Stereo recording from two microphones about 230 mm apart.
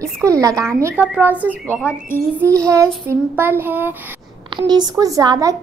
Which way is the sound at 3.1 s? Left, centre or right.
Centre.